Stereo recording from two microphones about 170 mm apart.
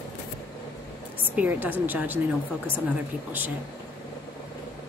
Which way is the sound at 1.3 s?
10° right (ahead or behind).